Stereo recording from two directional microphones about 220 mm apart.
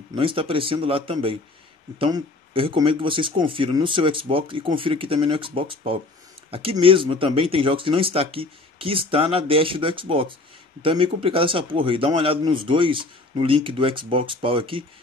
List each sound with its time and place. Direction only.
0.1 s a man's voice: 25° right (ahead or behind)